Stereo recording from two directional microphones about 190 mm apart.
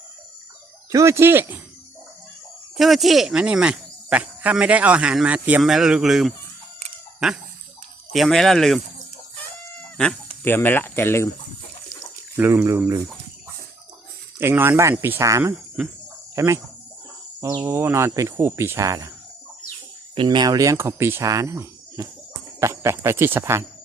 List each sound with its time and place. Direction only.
0.9 s speech: 15° right (ahead or behind)
2.7 s speech: centre (ahead or behind)
8.1 s speech: centre (ahead or behind)
10.4 s speech: 10° left (ahead or behind)
12.4 s speech: 10° right (ahead or behind)
14.3 s speech: 10° right (ahead or behind)
15.5 s speech: 5° right (ahead or behind)
16.3 s insect: 15° right (ahead or behind)
17.4 s speech: 20° right (ahead or behind)
20.1 s speech: 25° right (ahead or behind)